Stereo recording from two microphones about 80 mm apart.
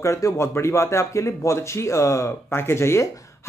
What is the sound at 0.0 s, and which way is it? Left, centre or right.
Speech, left.